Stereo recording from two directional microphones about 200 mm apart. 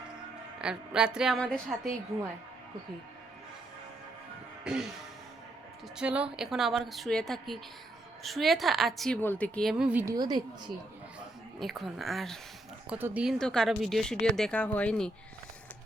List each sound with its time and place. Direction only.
0.6 s speech: 5° right (ahead or behind)
4.6 s music: 5° right (ahead or behind)
6.0 s speech: 5° right (ahead or behind)
10.2 s a woman's voice: 20° right (ahead or behind)
11.6 s speech: centre (ahead or behind)